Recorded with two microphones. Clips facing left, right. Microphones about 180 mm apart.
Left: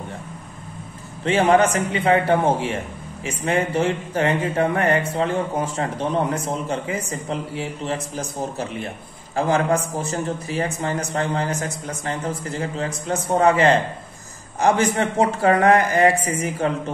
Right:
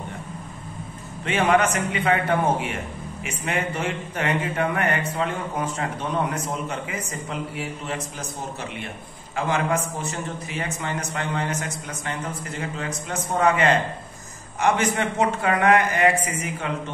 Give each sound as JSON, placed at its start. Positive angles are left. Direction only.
{"t": 1.2, "sound": "speech", "side_deg": 30}